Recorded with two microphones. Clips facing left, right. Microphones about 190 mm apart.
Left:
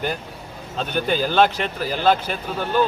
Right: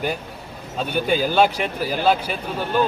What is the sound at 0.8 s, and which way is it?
Speech, 10° right (ahead or behind).